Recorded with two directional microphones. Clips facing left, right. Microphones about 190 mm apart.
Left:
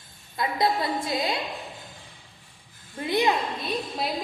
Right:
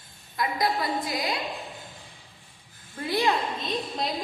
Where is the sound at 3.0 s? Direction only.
20° left (ahead or behind).